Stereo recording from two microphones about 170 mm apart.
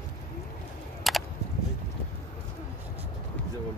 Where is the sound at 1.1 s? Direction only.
Centre (ahead or behind).